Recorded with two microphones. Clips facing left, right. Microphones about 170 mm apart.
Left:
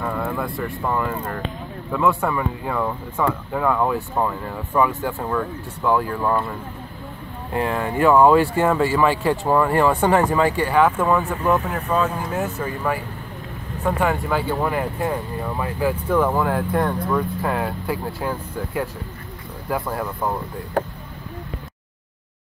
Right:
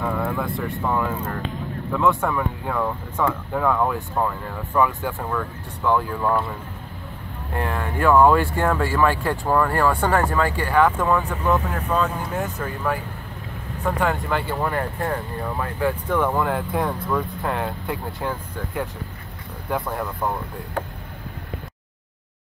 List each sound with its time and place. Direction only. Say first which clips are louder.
0.0 s speech: even; centre (ahead or behind)
7.5 s speech: left 4 dB; 10° left (ahead or behind)